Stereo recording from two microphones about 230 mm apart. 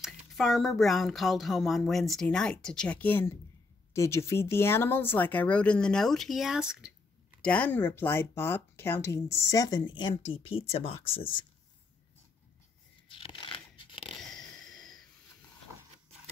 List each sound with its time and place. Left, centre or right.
0.0 s speech: centre; by 11.4 s left
13.1 s tearing: left
14.2 s a sound: centre